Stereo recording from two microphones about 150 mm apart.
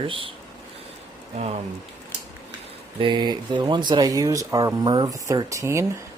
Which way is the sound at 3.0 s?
30° right (ahead or behind).